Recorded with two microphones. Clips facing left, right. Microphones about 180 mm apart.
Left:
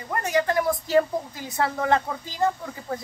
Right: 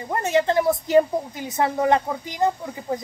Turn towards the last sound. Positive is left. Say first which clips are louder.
# right 4 dB
turn(degrees=-20)  # may be behind; listen again after turning